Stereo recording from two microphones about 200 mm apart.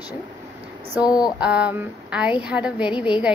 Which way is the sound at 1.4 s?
5° right (ahead or behind).